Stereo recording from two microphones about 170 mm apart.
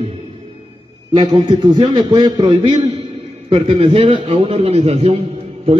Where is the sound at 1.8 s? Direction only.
30° right (ahead or behind).